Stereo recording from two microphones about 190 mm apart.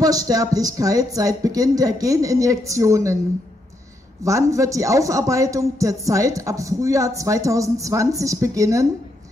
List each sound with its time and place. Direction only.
0.0 s speech: 20° right (ahead or behind)
4.2 s speech: 15° right (ahead or behind)